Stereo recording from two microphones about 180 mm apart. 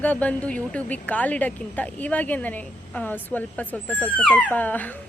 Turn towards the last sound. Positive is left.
turn(degrees=10)  # may be behind; listen again after turning